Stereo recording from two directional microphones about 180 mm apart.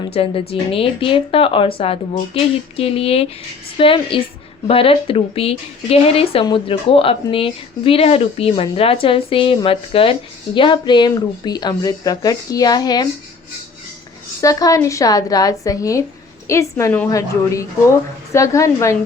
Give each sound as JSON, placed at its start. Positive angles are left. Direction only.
{"t": 0.1, "sound": "a woman's voice", "side_deg": 30}
{"t": 14.4, "sound": "a woman's voice", "side_deg": 20}